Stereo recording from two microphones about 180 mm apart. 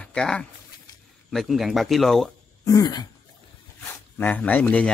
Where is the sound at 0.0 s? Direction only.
5° left (ahead or behind).